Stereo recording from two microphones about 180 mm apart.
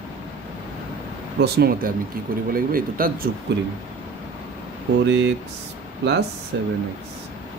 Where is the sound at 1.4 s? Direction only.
60° right (ahead or behind).